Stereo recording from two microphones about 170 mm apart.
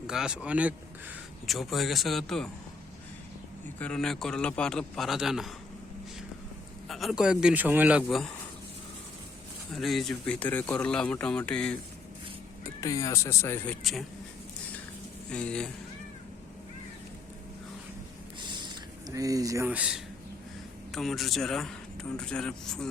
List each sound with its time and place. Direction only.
0.1 s speech: 5° right (ahead or behind)
3.8 s speech: 5° left (ahead or behind)
6.8 s speech: centre (ahead or behind)
8.0 s speech: 5° left (ahead or behind)
9.7 s speech: centre (ahead or behind)
12.8 s speech: 20° left (ahead or behind)
15.3 s speech: 5° left (ahead or behind)
18.3 s a sound: 25° right (ahead or behind)
19.6 s speech: 5° right (ahead or behind)